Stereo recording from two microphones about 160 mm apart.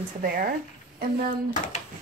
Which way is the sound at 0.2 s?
65° right (ahead or behind).